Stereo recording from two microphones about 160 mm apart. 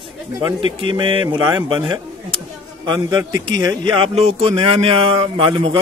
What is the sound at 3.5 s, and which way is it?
Speech, 30° right (ahead or behind).